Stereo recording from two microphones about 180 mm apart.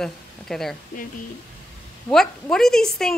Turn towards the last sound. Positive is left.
turn(degrees=5)  # may be behind; listen again after turning